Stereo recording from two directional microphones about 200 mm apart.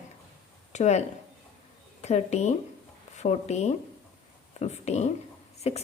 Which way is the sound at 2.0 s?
35° left (ahead or behind).